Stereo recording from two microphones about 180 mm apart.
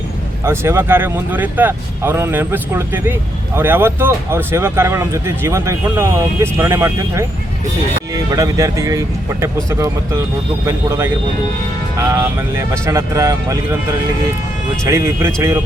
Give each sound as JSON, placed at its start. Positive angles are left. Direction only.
{"t": 0.4, "sound": "speech", "side_deg": -15}
{"t": 14.8, "sound": "speech", "side_deg": -15}